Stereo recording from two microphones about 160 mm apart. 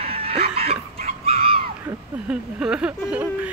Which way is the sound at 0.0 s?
40° right (ahead or behind).